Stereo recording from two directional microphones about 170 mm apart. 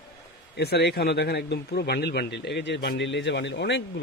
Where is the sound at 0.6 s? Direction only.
70° left (ahead or behind).